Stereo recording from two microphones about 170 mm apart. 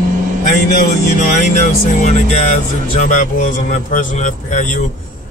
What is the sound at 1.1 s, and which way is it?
Speech, 50° left (ahead or behind).